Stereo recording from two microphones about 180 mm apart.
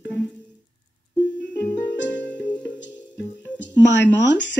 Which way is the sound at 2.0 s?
80° left.